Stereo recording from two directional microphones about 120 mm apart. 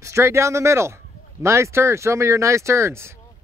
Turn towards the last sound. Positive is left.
turn(degrees=-20)  # may be behind; listen again after turning